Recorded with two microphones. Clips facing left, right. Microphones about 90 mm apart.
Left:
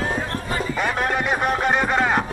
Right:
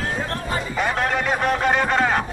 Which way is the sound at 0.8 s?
10° left (ahead or behind).